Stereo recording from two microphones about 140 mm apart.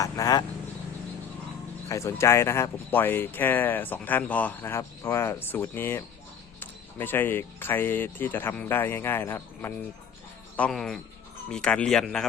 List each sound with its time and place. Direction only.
0.0 s speech: 25° left (ahead or behind)
1.9 s speech: 20° left (ahead or behind)
10.6 s speech: 5° left (ahead or behind)